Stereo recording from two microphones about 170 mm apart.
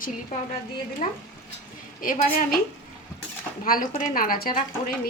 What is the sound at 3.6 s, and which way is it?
A woman's voice, 55° left (ahead or behind).